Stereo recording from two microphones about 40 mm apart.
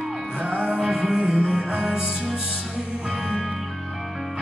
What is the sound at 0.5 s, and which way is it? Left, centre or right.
Music, right.